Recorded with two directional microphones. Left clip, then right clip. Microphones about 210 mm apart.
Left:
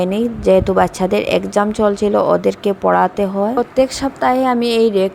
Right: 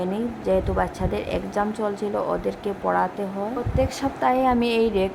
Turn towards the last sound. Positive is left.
turn(degrees=25)  # may be behind; listen again after turning